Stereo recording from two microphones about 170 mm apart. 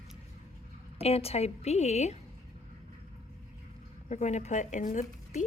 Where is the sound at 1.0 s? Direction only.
35° left (ahead or behind).